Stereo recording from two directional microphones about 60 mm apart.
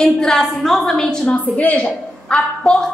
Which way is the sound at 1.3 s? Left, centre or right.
Left.